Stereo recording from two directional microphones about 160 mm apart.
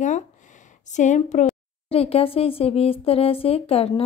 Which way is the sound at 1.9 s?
40° left (ahead or behind).